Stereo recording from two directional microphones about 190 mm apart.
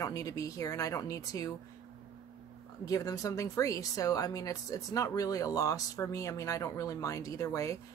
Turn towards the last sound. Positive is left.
turn(degrees=15)  # may be behind; listen again after turning